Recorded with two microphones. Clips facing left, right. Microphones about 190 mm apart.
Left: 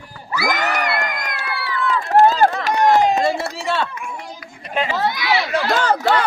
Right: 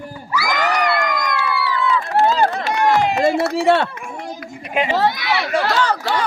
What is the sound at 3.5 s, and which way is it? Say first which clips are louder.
Speech: right 7 dB; 60° right (ahead or behind).